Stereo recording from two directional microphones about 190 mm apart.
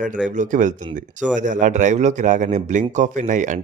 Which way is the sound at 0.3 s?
40° right (ahead or behind).